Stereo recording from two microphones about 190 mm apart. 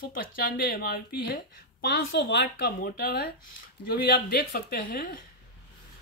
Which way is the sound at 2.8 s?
55° left (ahead or behind).